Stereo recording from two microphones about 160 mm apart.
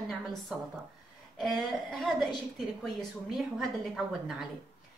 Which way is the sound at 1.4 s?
Centre (ahead or behind).